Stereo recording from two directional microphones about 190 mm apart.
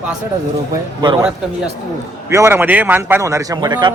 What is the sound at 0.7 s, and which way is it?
Speech, 20° right (ahead or behind).